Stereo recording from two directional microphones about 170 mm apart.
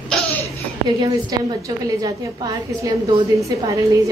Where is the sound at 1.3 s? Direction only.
25° right (ahead or behind).